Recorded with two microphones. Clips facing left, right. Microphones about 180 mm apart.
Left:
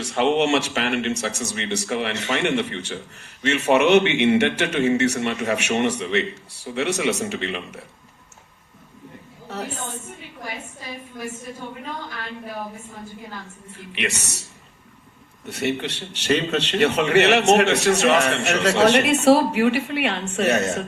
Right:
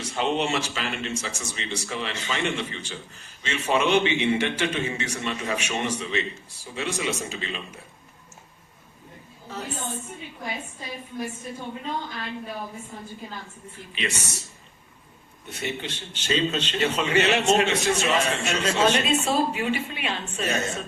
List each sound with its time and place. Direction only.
0.0 s speech: 75° left (ahead or behind)
13.9 s speech: 70° left (ahead or behind)
15.4 s speech: 70° left (ahead or behind)